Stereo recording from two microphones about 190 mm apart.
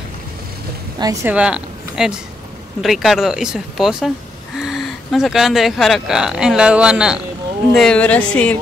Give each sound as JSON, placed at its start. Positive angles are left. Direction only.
{"t": 0.9, "sound": "speech", "side_deg": -20}
{"t": 1.3, "sound": "a woman's voice", "side_deg": -5}